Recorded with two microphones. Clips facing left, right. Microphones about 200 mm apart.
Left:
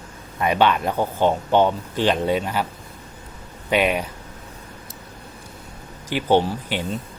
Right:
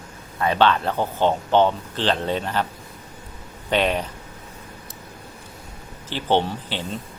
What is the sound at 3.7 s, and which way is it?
Speech, 10° left (ahead or behind).